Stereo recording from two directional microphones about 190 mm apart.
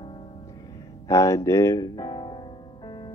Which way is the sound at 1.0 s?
15° left (ahead or behind).